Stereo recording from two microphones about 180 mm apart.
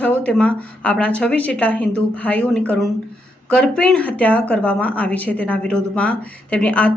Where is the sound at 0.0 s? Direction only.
10° left (ahead or behind).